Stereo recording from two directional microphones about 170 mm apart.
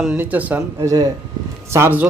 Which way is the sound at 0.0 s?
5° right (ahead or behind).